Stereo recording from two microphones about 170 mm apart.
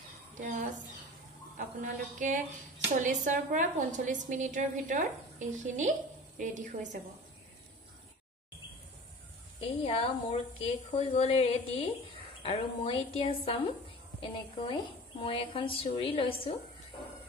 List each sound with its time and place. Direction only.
0.3 s a sound: 50° right (ahead or behind)
1.8 s a woman's voice: 50° right (ahead or behind)
9.8 s a woman's voice: 35° left (ahead or behind)